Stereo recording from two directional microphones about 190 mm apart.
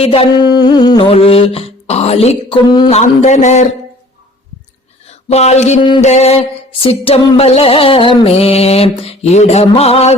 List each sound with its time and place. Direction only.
0.0 s music: 30° left (ahead or behind)
2.9 s music: 35° left (ahead or behind)
5.0 s speech: 35° left (ahead or behind)
6.0 s music: 35° left (ahead or behind)